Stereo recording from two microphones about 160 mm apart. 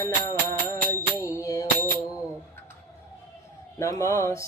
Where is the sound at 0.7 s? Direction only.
20° left (ahead or behind).